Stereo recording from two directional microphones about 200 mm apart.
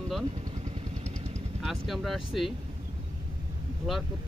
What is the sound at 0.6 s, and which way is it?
Vehicle, 35° right (ahead or behind).